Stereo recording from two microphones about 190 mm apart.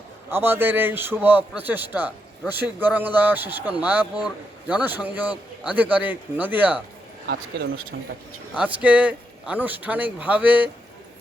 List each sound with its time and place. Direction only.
0.3 s a man's voice: 10° right (ahead or behind)
7.9 s speech: 55° right (ahead or behind)
8.5 s a man's voice: 5° right (ahead or behind)